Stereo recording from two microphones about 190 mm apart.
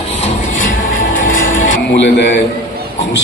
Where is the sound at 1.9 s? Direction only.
70° left (ahead or behind).